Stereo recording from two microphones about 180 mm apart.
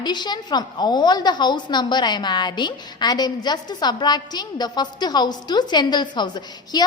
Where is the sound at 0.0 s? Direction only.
25° left (ahead or behind).